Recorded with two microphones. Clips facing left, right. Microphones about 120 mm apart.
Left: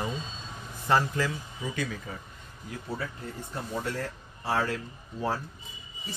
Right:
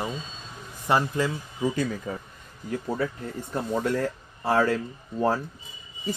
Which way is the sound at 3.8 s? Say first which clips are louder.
Right 8 dB; 45° right (ahead or behind).